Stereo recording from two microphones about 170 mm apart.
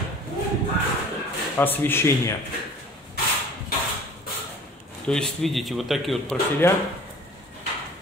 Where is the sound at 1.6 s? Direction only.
10° left (ahead or behind).